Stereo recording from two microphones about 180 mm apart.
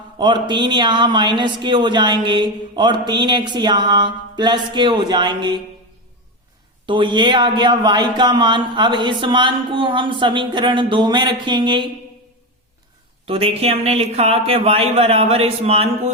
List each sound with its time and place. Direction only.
0.2 s speech: 25° right (ahead or behind)
6.8 s speech: 25° right (ahead or behind)
13.2 s speech: 30° right (ahead or behind)